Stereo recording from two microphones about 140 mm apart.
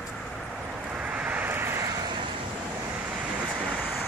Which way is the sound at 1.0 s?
10° right (ahead or behind).